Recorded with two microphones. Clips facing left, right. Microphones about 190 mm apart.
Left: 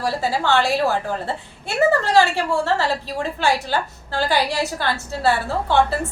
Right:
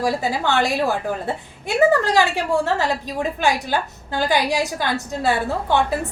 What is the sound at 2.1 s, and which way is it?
A woman's voice, 15° right (ahead or behind).